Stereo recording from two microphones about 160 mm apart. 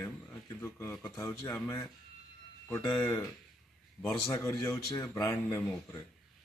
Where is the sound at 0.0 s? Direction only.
15° left (ahead or behind).